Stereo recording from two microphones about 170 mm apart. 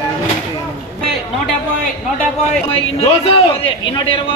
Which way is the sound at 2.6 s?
35° left (ahead or behind).